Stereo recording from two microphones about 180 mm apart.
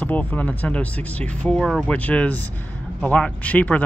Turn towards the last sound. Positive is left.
turn(degrees=10)  # may be behind; listen again after turning